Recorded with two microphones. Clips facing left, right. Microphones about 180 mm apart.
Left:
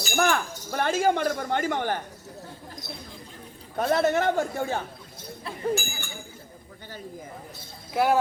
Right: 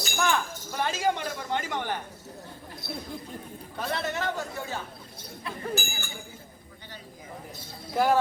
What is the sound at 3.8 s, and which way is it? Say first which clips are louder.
Speech: left 9 dB; 50° left (ahead or behind).